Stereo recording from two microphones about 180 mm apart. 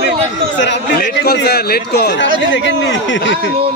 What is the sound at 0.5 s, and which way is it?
Speech, 75° left (ahead or behind).